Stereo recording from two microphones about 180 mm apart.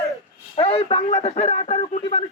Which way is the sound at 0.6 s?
30° left (ahead or behind).